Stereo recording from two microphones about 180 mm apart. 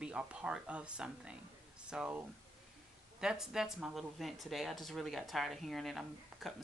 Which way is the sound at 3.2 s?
5° right (ahead or behind).